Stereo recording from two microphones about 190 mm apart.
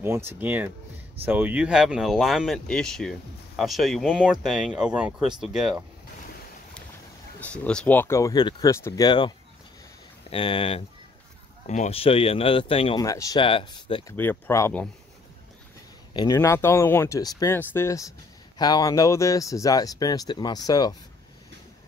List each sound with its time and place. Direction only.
0.0 s speech: 10° right (ahead or behind)
7.3 s speech: 5° left (ahead or behind); by 9.3 s 25° left (ahead or behind)
10.3 s speech: 25° left (ahead or behind)
11.6 s speech: 40° left (ahead or behind)
13.0 s speech: 15° left (ahead or behind)
14.1 s speech: 10° left (ahead or behind)
16.1 s speech: 20° left (ahead or behind)